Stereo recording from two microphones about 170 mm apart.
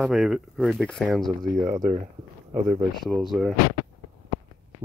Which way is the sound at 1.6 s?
25° right (ahead or behind).